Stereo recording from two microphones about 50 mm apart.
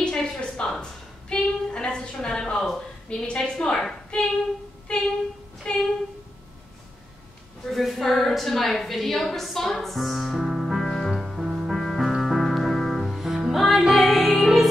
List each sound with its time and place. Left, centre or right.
0.0 s a sound: centre
2.1 s a woman's voice: centre
5.7 s speech: centre
7.7 s a woman's voice: centre
11.7 s music: centre